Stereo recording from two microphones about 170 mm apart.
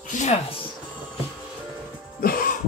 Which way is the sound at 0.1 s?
45° left (ahead or behind).